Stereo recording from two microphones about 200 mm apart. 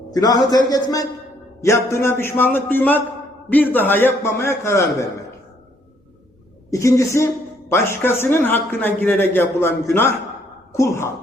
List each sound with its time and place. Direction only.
0.1 s a man's voice: 20° left (ahead or behind)
6.7 s a man's voice: 15° left (ahead or behind)